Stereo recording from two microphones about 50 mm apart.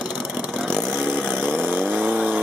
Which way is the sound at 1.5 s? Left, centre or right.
Right.